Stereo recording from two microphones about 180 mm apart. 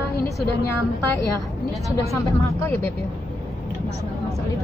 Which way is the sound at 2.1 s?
15° left (ahead or behind).